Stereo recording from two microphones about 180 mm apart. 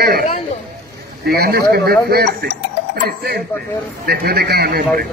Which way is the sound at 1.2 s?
60° right (ahead or behind).